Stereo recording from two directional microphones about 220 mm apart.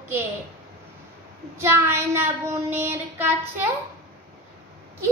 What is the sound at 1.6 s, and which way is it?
Child singing, 10° right (ahead or behind).